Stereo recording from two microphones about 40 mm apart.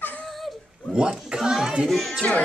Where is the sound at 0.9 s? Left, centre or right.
Right.